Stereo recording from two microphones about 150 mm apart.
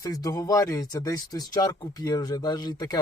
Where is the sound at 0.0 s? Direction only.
25° left (ahead or behind).